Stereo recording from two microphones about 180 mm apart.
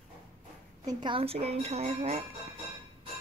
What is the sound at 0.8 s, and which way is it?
Speech, 25° right (ahead or behind).